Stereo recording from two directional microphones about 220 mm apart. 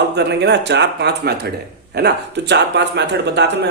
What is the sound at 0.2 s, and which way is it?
Speech, 50° right (ahead or behind).